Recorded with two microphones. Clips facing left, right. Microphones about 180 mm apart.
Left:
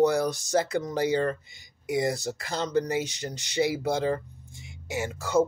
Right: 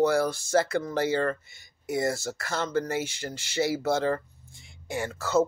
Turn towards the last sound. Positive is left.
turn(degrees=15)  # may be behind; listen again after turning